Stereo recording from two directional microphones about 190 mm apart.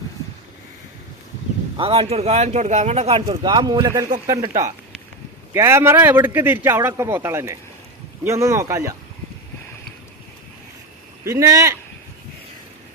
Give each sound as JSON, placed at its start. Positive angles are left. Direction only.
{"t": 1.7, "sound": "speech", "side_deg": -30}
{"t": 11.3, "sound": "speech", "side_deg": -15}